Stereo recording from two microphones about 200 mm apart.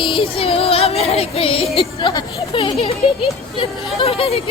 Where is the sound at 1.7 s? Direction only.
25° left (ahead or behind).